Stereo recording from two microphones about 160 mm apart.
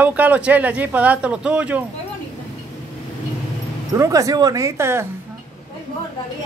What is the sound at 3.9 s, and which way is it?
Speech, 20° right (ahead or behind).